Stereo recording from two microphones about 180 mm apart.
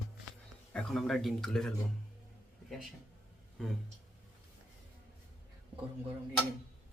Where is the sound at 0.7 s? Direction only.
5° left (ahead or behind).